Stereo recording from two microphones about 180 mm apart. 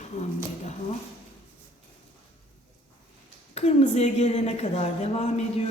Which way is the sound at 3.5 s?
35° left (ahead or behind).